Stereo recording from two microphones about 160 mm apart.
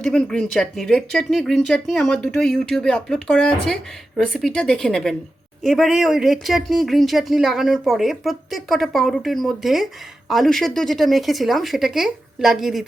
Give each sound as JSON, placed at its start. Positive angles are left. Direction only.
{"t": 0.0, "sound": "speech", "side_deg": 5}